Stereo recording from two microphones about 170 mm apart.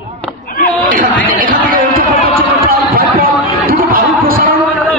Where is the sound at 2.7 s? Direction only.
60° right (ahead or behind).